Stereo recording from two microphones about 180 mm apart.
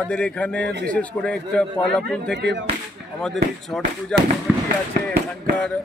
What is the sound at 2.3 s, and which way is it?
Speech, 75° right (ahead or behind).